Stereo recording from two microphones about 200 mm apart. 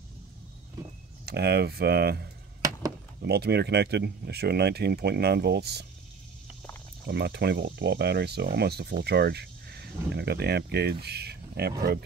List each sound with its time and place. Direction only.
1.2 s speech: 55° right (ahead or behind)
7.1 s speech: 55° right (ahead or behind)